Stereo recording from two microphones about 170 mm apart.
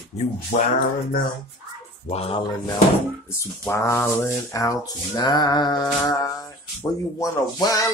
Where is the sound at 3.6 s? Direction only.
15° left (ahead or behind).